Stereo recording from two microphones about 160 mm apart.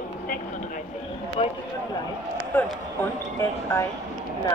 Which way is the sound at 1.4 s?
35° left (ahead or behind).